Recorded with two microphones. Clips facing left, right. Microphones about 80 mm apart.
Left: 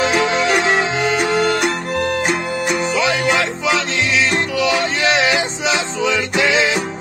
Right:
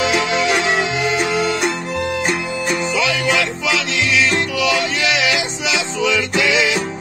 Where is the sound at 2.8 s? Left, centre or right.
Left.